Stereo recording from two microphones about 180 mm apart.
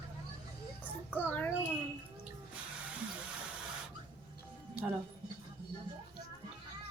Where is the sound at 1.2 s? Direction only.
10° left (ahead or behind).